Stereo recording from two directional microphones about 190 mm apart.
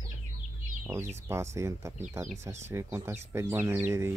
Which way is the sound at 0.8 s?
15° right (ahead or behind).